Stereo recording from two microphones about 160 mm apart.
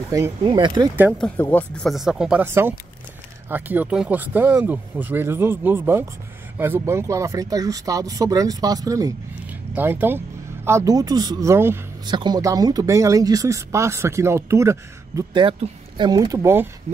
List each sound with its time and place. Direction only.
0.4 s speech: 30° right (ahead or behind)
1.1 s speech: 5° left (ahead or behind); by 11.8 s 15° right (ahead or behind)
12.1 s speech: 25° right (ahead or behind)
15.3 s speech: 30° right (ahead or behind)